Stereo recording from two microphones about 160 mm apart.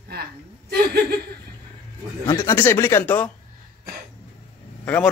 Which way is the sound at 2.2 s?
15° left (ahead or behind).